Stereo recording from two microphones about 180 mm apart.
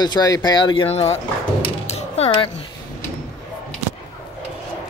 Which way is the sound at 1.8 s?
35° left (ahead or behind).